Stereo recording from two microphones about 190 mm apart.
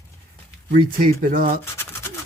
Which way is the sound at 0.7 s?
50° right (ahead or behind).